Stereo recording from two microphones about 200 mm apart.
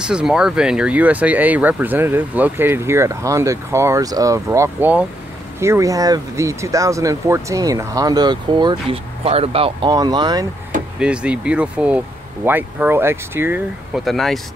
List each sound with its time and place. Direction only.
0.0 s speech: 5° right (ahead or behind); by 10.4 s 20° right (ahead or behind)
11.0 s speech: 5° right (ahead or behind)
14.0 s speech: centre (ahead or behind)